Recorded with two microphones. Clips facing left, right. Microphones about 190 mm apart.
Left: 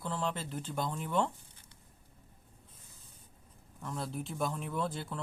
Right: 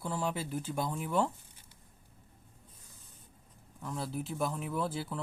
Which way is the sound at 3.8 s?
Centre (ahead or behind).